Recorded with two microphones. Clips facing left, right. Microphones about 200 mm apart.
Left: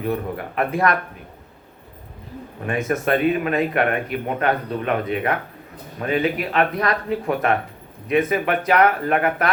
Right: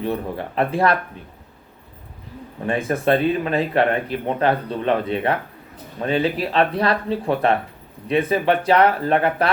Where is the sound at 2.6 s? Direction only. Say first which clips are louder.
Right 2 dB; 30° right (ahead or behind).